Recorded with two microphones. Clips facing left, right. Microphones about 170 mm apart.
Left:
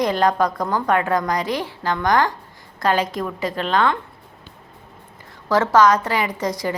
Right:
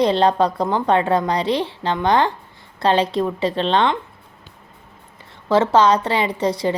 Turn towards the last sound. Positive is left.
turn(degrees=-30)  # may be behind; listen again after turning